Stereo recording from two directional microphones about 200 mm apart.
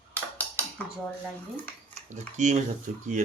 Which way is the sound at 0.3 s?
10° left (ahead or behind).